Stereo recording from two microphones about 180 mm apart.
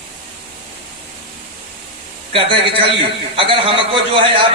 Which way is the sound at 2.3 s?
30° right (ahead or behind).